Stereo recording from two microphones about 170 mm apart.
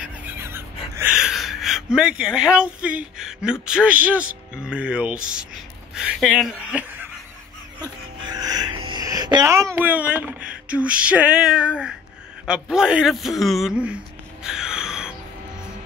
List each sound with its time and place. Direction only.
0.0 s a sound: 15° right (ahead or behind)
5.9 s speech: 5° right (ahead or behind)
7.8 s music: 20° right (ahead or behind)
9.8 s a sound: 10° right (ahead or behind)
12.4 s a man's voice: 5° right (ahead or behind)
14.4 s gasp: 5° right (ahead or behind)